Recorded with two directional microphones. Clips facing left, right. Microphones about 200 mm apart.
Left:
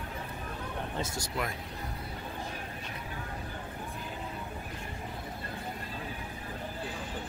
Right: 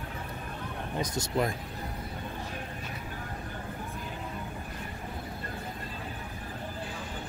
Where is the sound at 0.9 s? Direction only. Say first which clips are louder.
Right 8 dB; 20° right (ahead or behind).